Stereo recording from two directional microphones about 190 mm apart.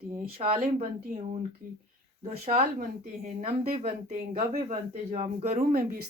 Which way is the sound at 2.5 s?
40° right (ahead or behind).